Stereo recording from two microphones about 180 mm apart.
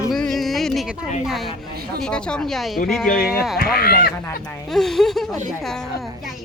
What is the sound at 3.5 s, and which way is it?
Speech, 55° left (ahead or behind).